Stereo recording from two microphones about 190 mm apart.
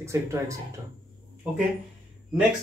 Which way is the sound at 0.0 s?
15° right (ahead or behind).